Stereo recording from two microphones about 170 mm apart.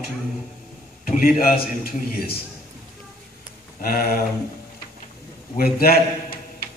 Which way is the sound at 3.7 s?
60° left (ahead or behind).